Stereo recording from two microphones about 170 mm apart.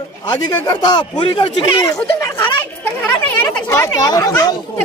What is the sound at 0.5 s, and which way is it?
Speech, 25° left (ahead or behind).